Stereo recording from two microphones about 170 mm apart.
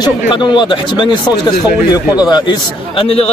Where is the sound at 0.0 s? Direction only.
25° left (ahead or behind).